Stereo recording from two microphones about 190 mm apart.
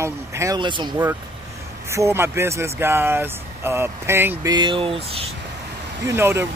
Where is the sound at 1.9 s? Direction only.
15° right (ahead or behind); by 5.3 s 30° right (ahead or behind).